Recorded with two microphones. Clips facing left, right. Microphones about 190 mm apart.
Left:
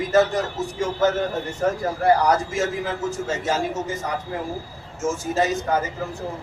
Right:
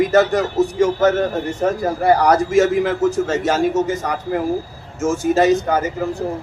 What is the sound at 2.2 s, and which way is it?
A man's voice, 75° right (ahead or behind).